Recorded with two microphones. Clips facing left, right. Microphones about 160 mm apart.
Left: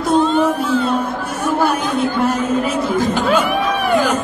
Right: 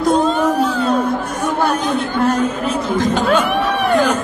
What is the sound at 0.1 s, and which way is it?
Music, 40° right (ahead or behind).